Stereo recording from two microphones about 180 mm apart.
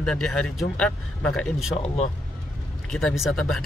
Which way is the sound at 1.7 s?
35° left (ahead or behind).